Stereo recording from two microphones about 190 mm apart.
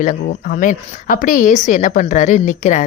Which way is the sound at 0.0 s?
45° left (ahead or behind).